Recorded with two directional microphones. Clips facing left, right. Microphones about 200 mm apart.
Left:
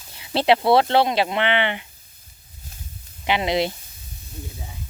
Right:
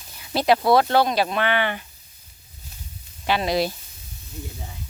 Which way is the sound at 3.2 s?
20° left (ahead or behind).